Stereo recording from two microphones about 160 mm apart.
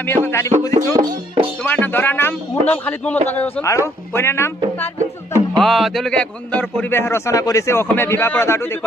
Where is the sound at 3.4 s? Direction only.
15° left (ahead or behind).